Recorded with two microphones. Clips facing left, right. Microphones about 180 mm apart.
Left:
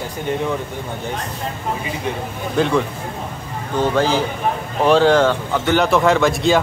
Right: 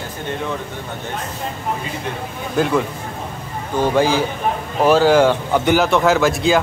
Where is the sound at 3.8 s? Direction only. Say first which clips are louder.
Right 1 dB; 10° right (ahead or behind).